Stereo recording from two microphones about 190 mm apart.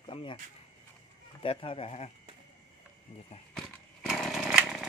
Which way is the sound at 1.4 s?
30° left (ahead or behind).